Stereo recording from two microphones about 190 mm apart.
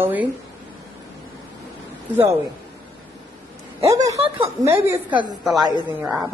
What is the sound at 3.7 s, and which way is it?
Speech, 15° right (ahead or behind).